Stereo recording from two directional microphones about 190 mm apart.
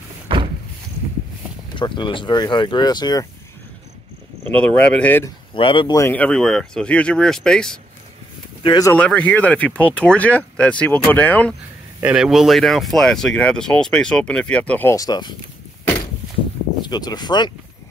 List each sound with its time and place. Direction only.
1.8 s speech: 25° left (ahead or behind)
4.6 s speech: 5° left (ahead or behind)
5.5 s speech: 25° left (ahead or behind); by 7.8 s 5° left (ahead or behind)
8.6 s speech: 20° left (ahead or behind)
8.9 s speech: 10° left (ahead or behind)
12.0 s speech: 5° right (ahead or behind); by 15.3 s 20° left (ahead or behind)
16.8 s speech: 20° left (ahead or behind)